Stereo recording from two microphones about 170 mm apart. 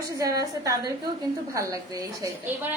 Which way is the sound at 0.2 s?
20° right (ahead or behind).